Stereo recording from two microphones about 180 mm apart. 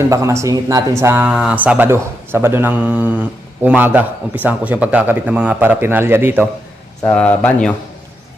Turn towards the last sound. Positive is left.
turn(degrees=10)  # may be behind; listen again after turning